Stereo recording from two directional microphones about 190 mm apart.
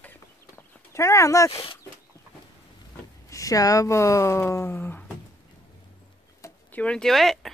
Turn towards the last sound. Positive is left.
turn(degrees=0)  # may be behind; listen again after turning